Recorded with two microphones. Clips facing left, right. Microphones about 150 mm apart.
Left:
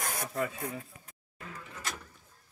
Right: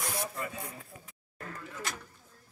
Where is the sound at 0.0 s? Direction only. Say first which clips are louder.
Right 1 dB; 45° left (ahead or behind).